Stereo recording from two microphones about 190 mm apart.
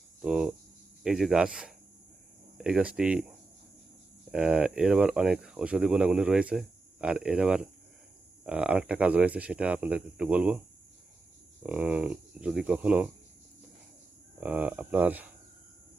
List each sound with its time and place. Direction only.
0.2 s speech: 5° right (ahead or behind)
4.3 s speech: 5° right (ahead or behind)
11.6 s speech: 5° right (ahead or behind)
14.4 s speech: 5° right (ahead or behind)